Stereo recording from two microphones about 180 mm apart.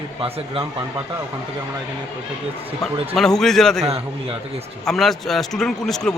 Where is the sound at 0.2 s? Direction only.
30° right (ahead or behind).